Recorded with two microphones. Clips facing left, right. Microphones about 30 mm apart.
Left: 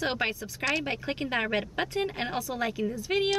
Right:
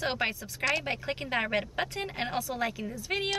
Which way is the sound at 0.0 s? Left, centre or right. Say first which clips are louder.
Left 1 dB; centre.